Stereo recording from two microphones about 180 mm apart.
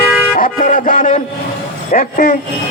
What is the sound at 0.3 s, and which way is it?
Music, 50° left (ahead or behind).